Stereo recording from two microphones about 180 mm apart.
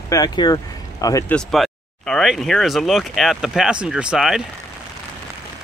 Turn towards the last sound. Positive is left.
turn(degrees=-5)  # may be behind; listen again after turning